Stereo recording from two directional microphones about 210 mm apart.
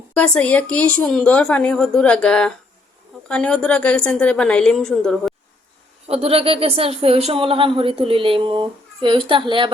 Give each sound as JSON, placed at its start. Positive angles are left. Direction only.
{"t": 0.1, "sound": "speech", "side_deg": 5}
{"t": 6.1, "sound": "a woman's voice", "side_deg": -30}